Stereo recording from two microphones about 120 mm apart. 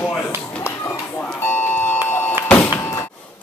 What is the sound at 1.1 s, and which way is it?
Music, 15° left (ahead or behind).